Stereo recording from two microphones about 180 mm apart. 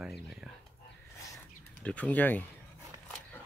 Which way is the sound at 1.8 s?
5° left (ahead or behind).